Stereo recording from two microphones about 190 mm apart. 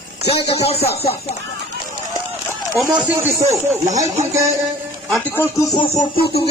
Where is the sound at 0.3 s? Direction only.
35° left (ahead or behind).